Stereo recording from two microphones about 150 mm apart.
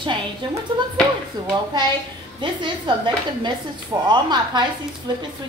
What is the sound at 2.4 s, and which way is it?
A woman's voice, 30° right (ahead or behind).